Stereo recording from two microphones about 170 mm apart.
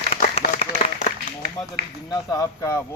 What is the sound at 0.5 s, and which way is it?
Clapping, 45° left (ahead or behind).